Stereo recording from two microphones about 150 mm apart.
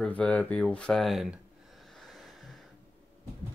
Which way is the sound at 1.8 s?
Centre (ahead or behind).